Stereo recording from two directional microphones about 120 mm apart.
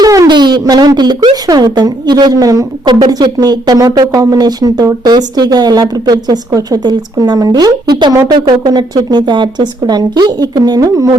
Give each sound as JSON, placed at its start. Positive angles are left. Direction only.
{"t": 0.0, "sound": "speech", "side_deg": -30}